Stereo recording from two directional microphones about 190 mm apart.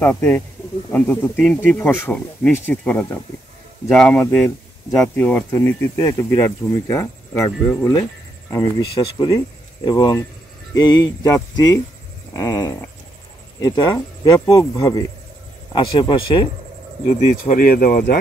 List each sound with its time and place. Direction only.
0.0 s a man's voice: 10° left (ahead or behind); by 16.4 s 25° left (ahead or behind)
17.2 s speech: 45° left (ahead or behind)